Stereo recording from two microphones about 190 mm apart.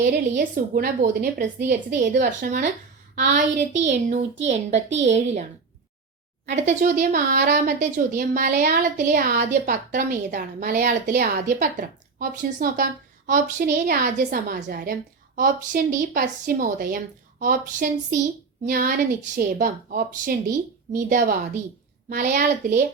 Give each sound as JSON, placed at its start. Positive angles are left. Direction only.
{"t": 0.0, "sound": "a woman's voice", "side_deg": -60}
{"t": 0.5, "sound": "a woman's voice", "side_deg": -45}
{"t": 3.7, "sound": "a child's voice", "side_deg": -70}
{"t": 4.4, "sound": "a woman's voice", "side_deg": -35}
{"t": 9.0, "sound": "a woman's voice", "side_deg": -50}
{"t": 13.6, "sound": "a woman's voice", "side_deg": -60}
{"t": 14.0, "sound": "a woman's voice", "side_deg": -40}